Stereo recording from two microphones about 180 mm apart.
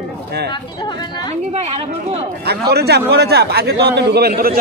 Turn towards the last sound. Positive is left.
turn(degrees=-60)  # may be behind; listen again after turning